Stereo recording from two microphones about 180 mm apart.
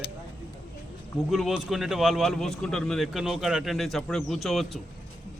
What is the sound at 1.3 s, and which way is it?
Speech, centre (ahead or behind).